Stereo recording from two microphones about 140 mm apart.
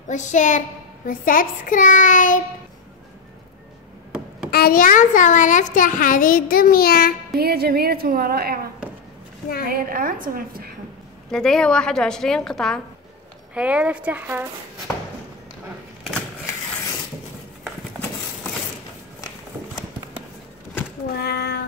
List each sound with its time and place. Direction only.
0.1 s a child's voice: 60° left (ahead or behind)
4.5 s a woman's voice: 90° left
7.3 s a woman's voice: 90° right
9.7 s a woman's voice: 85° right
11.3 s a woman's voice: 5° left (ahead or behind)
13.6 s a woman's voice: 10° right (ahead or behind)
21.4 s child singing: 90° left